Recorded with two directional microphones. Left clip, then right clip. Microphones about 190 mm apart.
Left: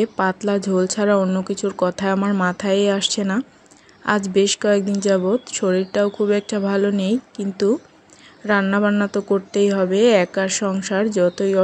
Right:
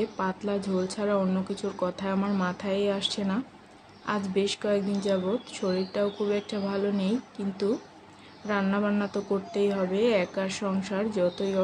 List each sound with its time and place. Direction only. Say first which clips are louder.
0.0 s speech: left 10 dB; 45° left (ahead or behind)